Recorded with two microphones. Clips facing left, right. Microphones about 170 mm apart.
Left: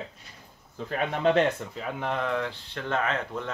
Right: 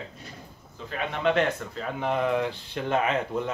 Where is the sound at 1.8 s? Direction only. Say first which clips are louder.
Right 3 dB; centre (ahead or behind).